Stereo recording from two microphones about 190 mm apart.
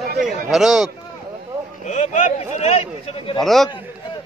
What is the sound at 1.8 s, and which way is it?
Speech, 40° left (ahead or behind).